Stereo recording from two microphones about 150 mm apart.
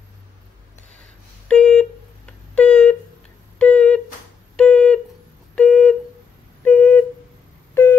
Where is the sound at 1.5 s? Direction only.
5° left (ahead or behind).